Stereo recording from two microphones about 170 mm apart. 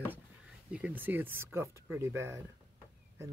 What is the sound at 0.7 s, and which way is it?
Speech, 10° right (ahead or behind).